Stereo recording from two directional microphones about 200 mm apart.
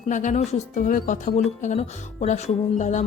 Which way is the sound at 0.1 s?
40° left (ahead or behind).